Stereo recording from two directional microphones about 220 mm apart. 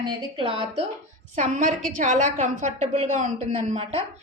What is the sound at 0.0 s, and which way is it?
A woman's voice, 20° right (ahead or behind).